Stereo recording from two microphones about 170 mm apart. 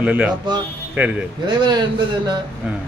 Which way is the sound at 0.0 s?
10° right (ahead or behind).